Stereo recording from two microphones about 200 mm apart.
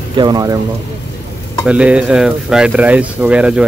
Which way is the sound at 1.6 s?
5° right (ahead or behind).